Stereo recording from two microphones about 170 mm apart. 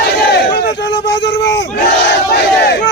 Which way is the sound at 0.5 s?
90° left.